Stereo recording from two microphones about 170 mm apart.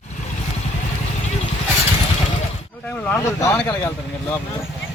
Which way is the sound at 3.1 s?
15° left (ahead or behind).